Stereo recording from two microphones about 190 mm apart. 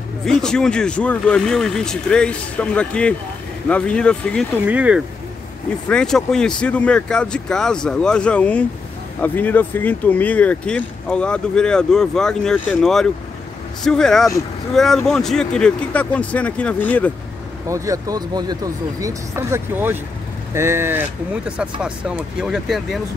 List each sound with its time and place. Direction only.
0.2 s speech: centre (ahead or behind)
4.6 s speech: 5° right (ahead or behind)
5.9 s speech: 5° left (ahead or behind)
17.6 s speech: 15° right (ahead or behind)